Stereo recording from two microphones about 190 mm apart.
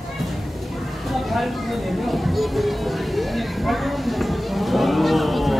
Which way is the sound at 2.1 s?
Centre (ahead or behind).